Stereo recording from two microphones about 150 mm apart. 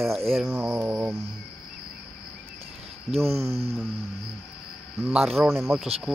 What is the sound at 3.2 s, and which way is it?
Speech, 20° right (ahead or behind).